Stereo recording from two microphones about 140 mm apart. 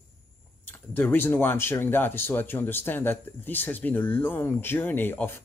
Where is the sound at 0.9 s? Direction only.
15° left (ahead or behind).